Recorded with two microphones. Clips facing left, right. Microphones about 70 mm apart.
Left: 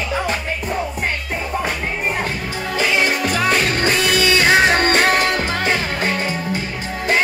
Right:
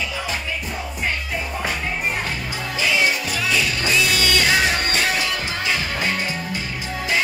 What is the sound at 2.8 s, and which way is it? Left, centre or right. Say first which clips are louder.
Music: left 3 dB; left.